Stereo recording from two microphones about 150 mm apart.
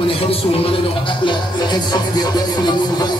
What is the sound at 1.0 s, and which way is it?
Music, 30° left (ahead or behind).